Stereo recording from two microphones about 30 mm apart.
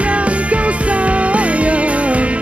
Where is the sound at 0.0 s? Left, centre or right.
Right.